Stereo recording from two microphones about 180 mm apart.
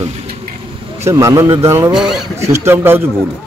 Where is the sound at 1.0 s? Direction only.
15° right (ahead or behind).